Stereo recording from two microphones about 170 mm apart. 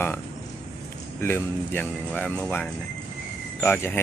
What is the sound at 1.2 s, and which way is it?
Speech, 10° left (ahead or behind).